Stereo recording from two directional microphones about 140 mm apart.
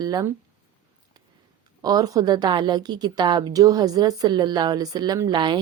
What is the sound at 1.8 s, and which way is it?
A woman's voice, 30° right (ahead or behind).